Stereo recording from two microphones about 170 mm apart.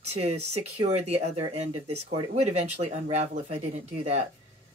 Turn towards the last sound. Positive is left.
turn(degrees=-40)  # may be behind; listen again after turning